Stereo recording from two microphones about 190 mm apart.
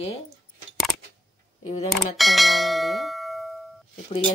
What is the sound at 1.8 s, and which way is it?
Bell, centre (ahead or behind).